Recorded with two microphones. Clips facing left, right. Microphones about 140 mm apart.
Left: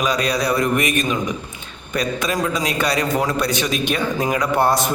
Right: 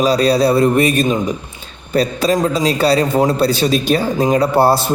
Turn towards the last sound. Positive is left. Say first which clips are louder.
# right 5 dB
turn(degrees=-30)  # may be behind; listen again after turning